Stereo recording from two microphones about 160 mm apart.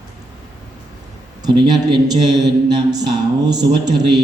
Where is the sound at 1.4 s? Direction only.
25° right (ahead or behind).